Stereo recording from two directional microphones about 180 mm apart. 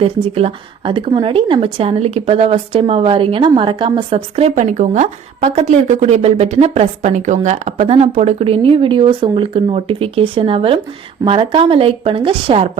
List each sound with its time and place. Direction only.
0.3 s a woman's voice: 30° right (ahead or behind)